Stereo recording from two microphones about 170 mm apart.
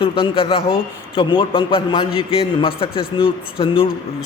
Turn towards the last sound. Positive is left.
turn(degrees=35)  # may be behind; listen again after turning